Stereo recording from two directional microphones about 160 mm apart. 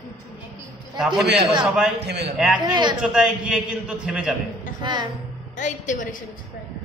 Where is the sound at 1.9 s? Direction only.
90° right.